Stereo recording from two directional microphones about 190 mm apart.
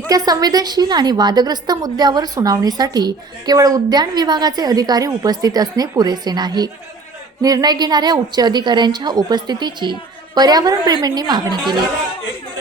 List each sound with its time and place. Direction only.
0.1 s a woman's voice: 20° right (ahead or behind)